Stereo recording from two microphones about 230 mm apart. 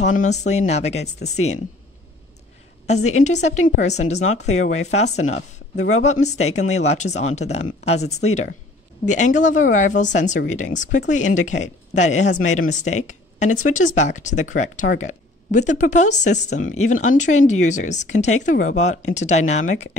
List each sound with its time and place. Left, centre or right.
0.0 s a woman's voice: left
2.9 s a woman's voice: left